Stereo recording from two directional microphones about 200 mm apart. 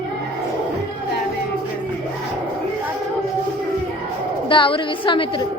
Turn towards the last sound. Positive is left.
turn(degrees=25)  # may be behind; listen again after turning